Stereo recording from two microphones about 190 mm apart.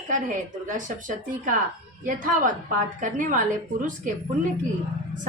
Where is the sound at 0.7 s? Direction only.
45° right (ahead or behind).